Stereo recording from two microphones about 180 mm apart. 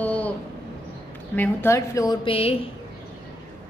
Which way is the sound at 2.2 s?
30° left (ahead or behind).